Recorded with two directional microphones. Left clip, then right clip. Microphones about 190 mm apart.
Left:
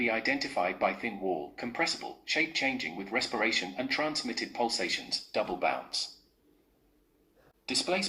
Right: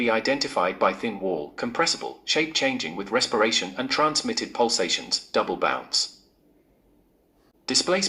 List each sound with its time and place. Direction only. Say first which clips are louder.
0.0 s speech: right 7 dB; 40° right (ahead or behind)
7.6 s speech: right 7 dB; 40° right (ahead or behind)